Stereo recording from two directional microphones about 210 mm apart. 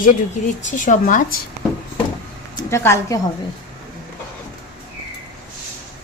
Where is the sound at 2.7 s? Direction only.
15° left (ahead or behind).